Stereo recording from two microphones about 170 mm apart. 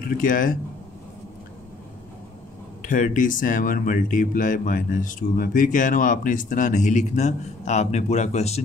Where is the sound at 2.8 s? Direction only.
50° left (ahead or behind).